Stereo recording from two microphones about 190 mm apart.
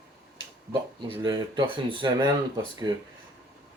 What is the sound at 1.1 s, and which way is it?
Speech, 25° right (ahead or behind).